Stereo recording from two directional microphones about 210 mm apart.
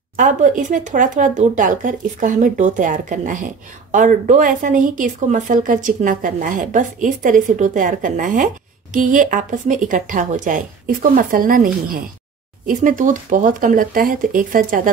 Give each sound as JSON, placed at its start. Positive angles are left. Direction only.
{"t": 0.1, "sound": "speech", "side_deg": -35}